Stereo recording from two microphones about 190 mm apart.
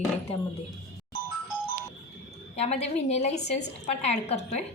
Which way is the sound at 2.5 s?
35° left (ahead or behind).